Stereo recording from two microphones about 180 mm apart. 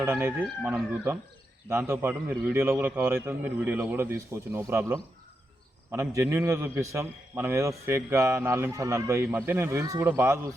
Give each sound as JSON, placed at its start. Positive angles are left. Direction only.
{"t": 0.0, "sound": "a man's voice", "side_deg": -10}